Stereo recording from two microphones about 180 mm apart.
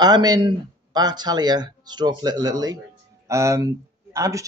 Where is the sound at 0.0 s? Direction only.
20° right (ahead or behind).